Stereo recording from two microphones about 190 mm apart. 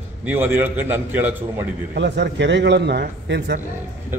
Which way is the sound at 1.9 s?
65° right (ahead or behind).